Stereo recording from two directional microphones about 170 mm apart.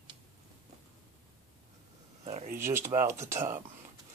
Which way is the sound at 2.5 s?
15° right (ahead or behind).